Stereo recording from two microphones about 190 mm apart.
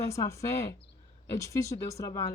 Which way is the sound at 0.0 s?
15° left (ahead or behind).